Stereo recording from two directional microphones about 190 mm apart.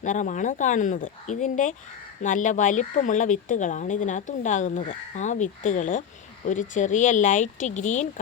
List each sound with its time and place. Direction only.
0.0 s speech: 40° left (ahead or behind)